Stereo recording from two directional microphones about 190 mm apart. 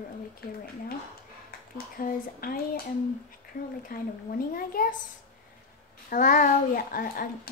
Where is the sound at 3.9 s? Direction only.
50° left (ahead or behind).